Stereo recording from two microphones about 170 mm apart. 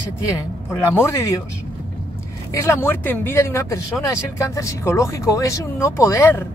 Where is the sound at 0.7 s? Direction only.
15° left (ahead or behind).